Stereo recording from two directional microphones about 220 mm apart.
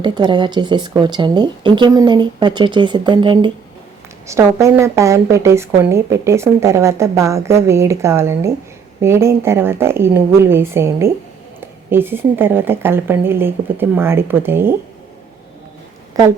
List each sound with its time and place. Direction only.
0.0 s a woman's voice: 20° right (ahead or behind)
16.1 s a woman's voice: 15° right (ahead or behind)